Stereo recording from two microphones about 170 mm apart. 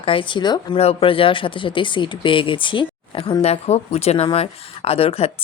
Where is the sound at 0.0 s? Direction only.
30° left (ahead or behind).